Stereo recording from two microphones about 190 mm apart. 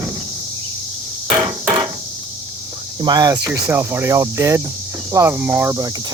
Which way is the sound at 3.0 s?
20° right (ahead or behind).